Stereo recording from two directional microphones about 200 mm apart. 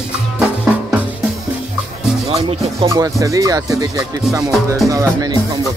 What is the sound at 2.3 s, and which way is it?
Music, 30° right (ahead or behind).